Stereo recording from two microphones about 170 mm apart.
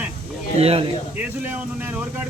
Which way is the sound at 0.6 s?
35° right (ahead or behind).